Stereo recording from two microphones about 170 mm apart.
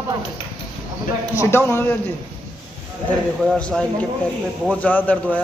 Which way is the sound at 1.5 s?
15° left (ahead or behind).